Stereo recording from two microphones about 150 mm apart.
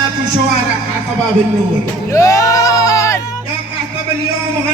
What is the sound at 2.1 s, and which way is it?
Speech, 20° left (ahead or behind).